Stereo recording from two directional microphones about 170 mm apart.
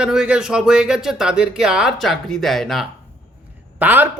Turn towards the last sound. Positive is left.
turn(degrees=-10)  # may be behind; listen again after turning